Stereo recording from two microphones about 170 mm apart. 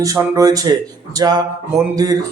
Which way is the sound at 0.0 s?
20° right (ahead or behind).